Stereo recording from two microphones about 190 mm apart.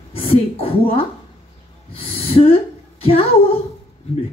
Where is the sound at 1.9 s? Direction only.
30° left (ahead or behind).